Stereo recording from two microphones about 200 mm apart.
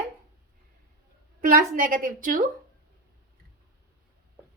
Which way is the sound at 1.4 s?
45° right (ahead or behind).